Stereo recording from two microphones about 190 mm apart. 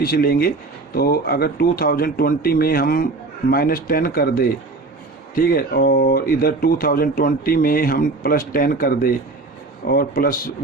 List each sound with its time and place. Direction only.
0.0 s speech: 50° left (ahead or behind)